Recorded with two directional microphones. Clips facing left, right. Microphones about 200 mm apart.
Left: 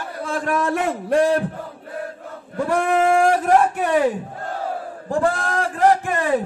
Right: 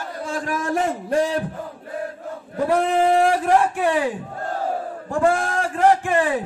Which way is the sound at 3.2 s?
45° left (ahead or behind).